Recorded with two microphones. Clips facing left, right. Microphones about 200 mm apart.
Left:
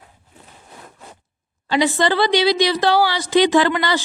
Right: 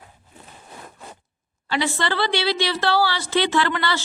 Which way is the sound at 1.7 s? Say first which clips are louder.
Left 6 dB; 15° left (ahead or behind).